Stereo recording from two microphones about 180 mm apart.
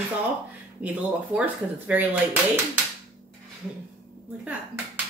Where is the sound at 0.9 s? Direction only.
10° right (ahead or behind).